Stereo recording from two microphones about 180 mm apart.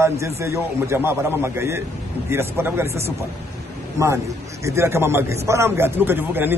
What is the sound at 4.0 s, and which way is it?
A man's voice, 15° right (ahead or behind).